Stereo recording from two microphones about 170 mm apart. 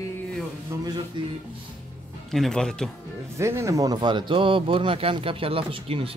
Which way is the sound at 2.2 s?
Centre (ahead or behind).